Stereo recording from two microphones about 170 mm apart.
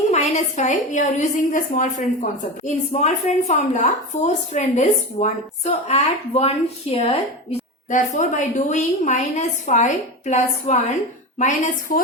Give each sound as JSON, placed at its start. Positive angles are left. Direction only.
{"t": 0.1, "sound": "a woman's voice", "side_deg": 45}
{"t": 7.9, "sound": "a woman's voice", "side_deg": 45}